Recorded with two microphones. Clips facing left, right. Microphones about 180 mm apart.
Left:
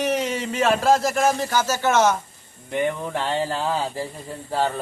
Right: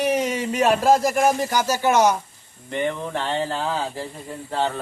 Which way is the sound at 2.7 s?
10° left (ahead or behind).